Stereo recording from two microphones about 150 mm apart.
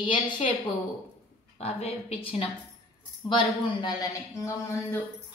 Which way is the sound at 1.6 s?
45° left (ahead or behind).